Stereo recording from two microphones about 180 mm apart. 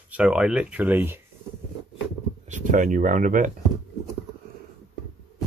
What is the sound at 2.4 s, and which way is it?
Speech, 45° right (ahead or behind).